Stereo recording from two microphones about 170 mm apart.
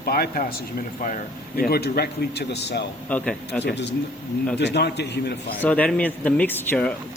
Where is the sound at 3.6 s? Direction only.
90° left.